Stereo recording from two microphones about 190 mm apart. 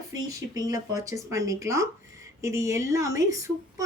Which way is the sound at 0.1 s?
20° right (ahead or behind).